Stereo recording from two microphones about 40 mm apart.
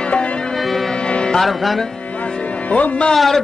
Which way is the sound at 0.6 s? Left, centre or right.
Centre.